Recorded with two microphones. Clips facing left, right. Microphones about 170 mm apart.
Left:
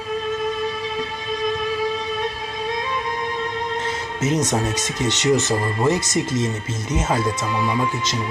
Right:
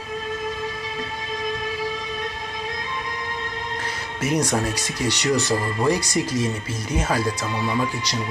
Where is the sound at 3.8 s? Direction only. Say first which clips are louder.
Left 3 dB; 25° left (ahead or behind).